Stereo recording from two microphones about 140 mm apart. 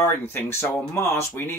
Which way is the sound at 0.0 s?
15° left (ahead or behind).